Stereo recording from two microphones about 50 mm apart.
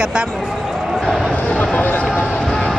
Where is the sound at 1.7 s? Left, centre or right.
Left.